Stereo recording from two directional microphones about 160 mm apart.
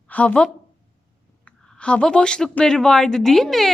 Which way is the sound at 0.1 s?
10° left (ahead or behind).